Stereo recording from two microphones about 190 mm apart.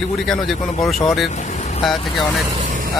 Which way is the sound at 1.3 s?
35° left (ahead or behind).